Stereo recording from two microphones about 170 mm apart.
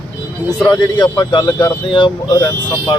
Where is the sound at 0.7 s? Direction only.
25° left (ahead or behind).